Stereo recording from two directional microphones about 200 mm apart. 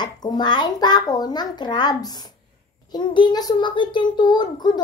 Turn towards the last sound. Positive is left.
turn(degrees=20)  # may be behind; listen again after turning